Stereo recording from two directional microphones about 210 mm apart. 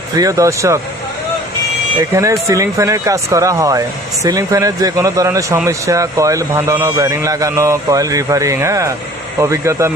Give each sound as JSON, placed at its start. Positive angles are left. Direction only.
{"t": 0.1, "sound": "speech", "side_deg": -15}
{"t": 2.0, "sound": "speech", "side_deg": -15}